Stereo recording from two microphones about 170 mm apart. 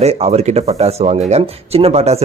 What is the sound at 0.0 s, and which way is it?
Speech, 40° right (ahead or behind).